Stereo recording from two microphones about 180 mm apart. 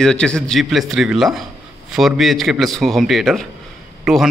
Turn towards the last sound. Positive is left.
turn(degrees=0)  # may be behind; listen again after turning